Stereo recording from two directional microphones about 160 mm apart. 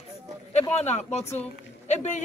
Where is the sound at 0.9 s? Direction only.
45° left (ahead or behind).